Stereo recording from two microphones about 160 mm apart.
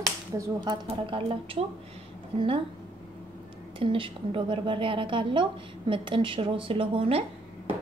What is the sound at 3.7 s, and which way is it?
A woman's voice, 30° right (ahead or behind).